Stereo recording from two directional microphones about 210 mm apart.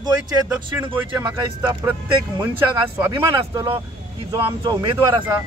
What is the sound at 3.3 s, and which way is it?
Speech, 25° right (ahead or behind).